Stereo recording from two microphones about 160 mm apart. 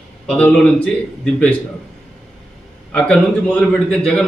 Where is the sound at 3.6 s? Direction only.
5° left (ahead or behind).